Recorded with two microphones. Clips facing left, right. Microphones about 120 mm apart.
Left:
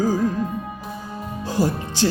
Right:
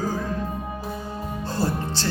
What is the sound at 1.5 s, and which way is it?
Music, 15° left (ahead or behind).